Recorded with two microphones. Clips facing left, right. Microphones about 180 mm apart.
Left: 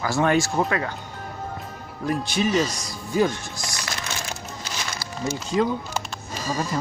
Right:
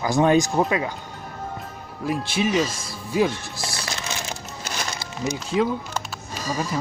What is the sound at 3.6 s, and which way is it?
Speech, 30° right (ahead or behind).